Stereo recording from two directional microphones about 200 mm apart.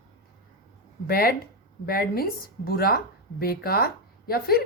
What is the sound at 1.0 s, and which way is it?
Speech, 50° left (ahead or behind).